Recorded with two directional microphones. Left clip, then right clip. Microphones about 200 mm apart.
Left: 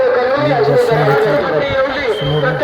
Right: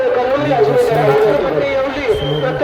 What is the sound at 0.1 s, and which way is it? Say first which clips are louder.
Chatter: left 1 dB; 10° right (ahead or behind).